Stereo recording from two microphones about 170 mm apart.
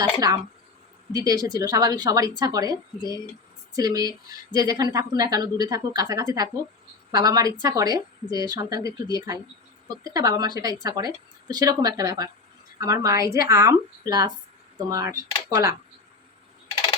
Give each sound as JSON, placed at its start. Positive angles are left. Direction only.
{"t": 0.0, "sound": "a woman's voice", "side_deg": -25}
{"t": 3.8, "sound": "a woman's voice", "side_deg": -20}